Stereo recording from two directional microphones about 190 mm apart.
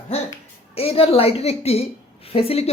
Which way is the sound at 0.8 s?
30° left (ahead or behind).